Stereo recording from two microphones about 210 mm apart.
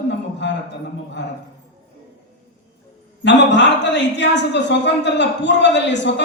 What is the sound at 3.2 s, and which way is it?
A man's voice, 55° left (ahead or behind).